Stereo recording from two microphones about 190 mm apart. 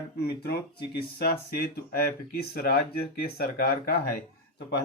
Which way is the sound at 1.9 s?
55° left (ahead or behind).